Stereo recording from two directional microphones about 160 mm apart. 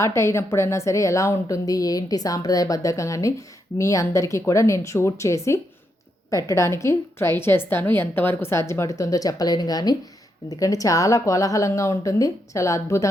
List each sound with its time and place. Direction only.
0.0 s a woman's voice: 15° left (ahead or behind)